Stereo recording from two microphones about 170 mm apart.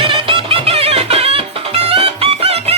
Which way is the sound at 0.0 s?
30° right (ahead or behind).